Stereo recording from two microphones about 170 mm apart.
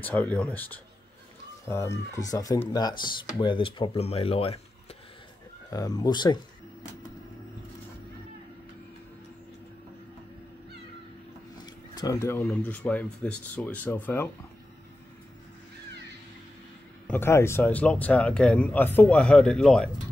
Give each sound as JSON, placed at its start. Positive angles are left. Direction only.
{"t": 0.0, "sound": "speech", "side_deg": 10}
{"t": 5.7, "sound": "speech", "side_deg": 20}
{"t": 11.6, "sound": "speech", "side_deg": 20}
{"t": 17.1, "sound": "speech", "side_deg": 15}